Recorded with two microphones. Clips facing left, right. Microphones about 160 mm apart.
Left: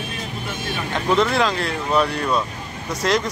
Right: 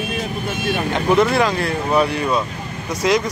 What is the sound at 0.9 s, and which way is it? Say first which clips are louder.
Speech: right 2 dB; 10° right (ahead or behind).